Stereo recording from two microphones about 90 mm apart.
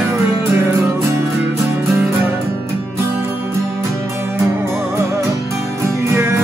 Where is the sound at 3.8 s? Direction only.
30° right (ahead or behind).